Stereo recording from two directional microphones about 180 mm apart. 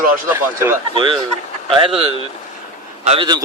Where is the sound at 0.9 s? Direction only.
30° right (ahead or behind).